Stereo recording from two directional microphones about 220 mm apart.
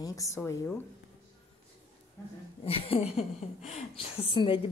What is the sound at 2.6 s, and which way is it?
Speech, 25° left (ahead or behind).